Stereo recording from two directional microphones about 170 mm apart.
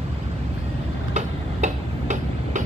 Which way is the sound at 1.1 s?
45° right (ahead or behind).